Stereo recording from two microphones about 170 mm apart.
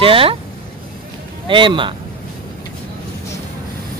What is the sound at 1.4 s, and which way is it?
Speech, 30° right (ahead or behind).